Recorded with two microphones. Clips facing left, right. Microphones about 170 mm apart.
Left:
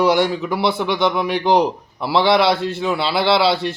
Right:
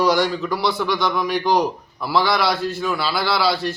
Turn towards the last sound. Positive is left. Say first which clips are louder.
# left 4 dB
turn(degrees=25)  # may be behind; listen again after turning